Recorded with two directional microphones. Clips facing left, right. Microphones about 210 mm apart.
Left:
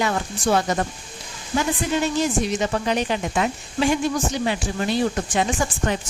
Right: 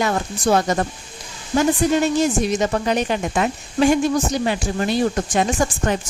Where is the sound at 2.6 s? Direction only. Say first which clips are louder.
Right 3 dB; 45° right (ahead or behind).